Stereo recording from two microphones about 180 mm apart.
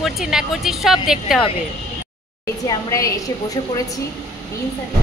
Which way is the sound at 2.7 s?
15° left (ahead or behind).